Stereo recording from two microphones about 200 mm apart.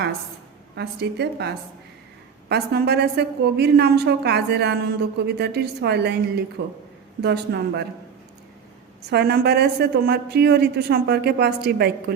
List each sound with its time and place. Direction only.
0.8 s a woman's voice: 55° right (ahead or behind)
9.0 s a woman's voice: 55° right (ahead or behind)